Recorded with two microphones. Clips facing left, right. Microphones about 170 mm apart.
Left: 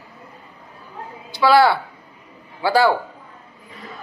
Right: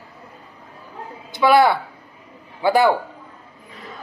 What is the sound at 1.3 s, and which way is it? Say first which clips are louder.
Speech: even; 20° right (ahead or behind).